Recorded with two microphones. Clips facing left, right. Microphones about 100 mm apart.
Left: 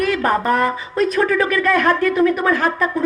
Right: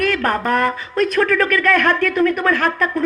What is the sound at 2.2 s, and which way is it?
Speech, 10° left (ahead or behind).